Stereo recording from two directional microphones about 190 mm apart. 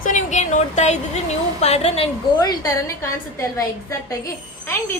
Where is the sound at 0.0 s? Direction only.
40° left (ahead or behind).